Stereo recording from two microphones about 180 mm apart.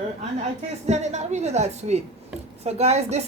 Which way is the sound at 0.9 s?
40° right (ahead or behind).